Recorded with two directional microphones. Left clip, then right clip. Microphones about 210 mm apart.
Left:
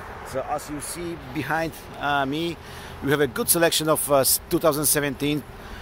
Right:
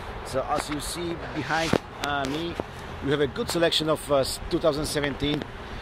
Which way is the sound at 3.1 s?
35° left (ahead or behind).